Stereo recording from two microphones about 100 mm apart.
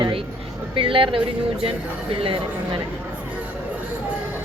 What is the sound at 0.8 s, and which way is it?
Speech, 60° right (ahead or behind).